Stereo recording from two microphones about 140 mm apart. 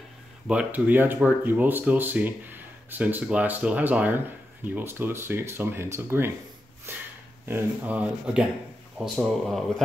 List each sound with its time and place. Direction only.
0.5 s speech: 10° right (ahead or behind)